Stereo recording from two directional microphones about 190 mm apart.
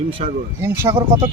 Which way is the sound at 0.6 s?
15° right (ahead or behind).